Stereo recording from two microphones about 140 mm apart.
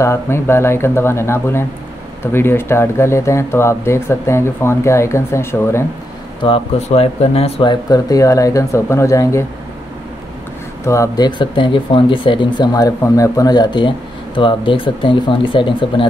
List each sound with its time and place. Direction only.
0.0 s speech: 20° left (ahead or behind)
6.4 s speech: 45° left (ahead or behind)
7.9 s speech: 25° left (ahead or behind)
10.8 s speech: 20° left (ahead or behind)